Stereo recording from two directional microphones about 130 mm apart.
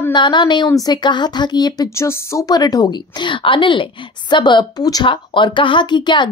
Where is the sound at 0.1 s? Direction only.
35° left (ahead or behind).